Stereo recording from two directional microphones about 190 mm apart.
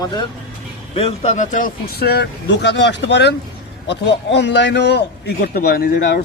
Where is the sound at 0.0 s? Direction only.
25° left (ahead or behind).